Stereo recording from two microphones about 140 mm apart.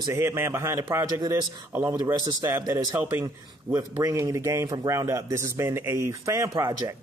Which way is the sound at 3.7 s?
30° right (ahead or behind).